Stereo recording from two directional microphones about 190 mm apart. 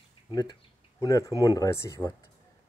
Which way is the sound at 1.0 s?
15° left (ahead or behind).